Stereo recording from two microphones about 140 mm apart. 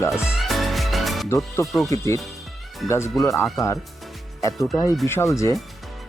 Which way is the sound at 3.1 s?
Centre (ahead or behind).